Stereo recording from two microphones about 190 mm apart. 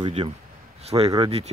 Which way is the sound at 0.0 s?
25° right (ahead or behind).